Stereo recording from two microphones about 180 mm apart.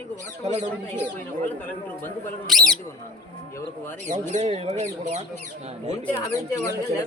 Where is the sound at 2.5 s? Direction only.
Centre (ahead or behind).